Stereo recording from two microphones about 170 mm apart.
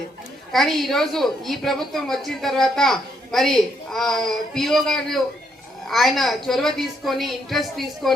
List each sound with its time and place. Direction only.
0.5 s a woman's voice: centre (ahead or behind)